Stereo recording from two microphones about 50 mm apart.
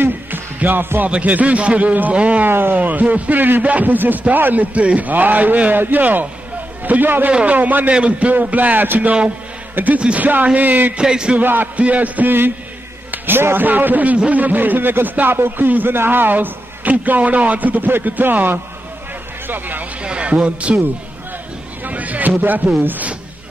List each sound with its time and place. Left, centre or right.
0.6 s music: right
1.0 s a man's voice: right
2.4 s a man's voice: right
7.2 s a man's voice: right
9.9 s a man's voice: right
11.0 s speech: centre
11.3 s a man's voice: right
11.7 s a man's voice: right
13.1 s a man's voice: right
20.0 s a man's voice: right
21.8 s a man's voice: right